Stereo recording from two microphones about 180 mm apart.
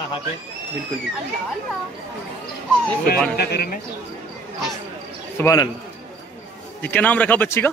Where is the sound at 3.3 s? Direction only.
55° left (ahead or behind).